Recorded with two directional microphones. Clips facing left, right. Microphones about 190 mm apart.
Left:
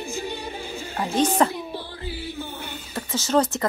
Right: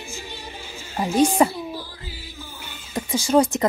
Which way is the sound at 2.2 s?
60° left (ahead or behind).